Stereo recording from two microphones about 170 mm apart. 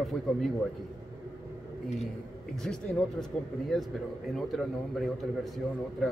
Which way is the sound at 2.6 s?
5° left (ahead or behind).